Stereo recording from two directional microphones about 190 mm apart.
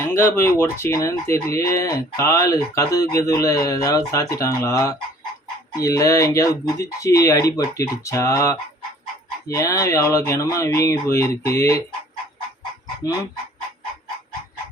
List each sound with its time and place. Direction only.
0.0 s speech: 10° left (ahead or behind)
9.6 s speech: 15° left (ahead or behind)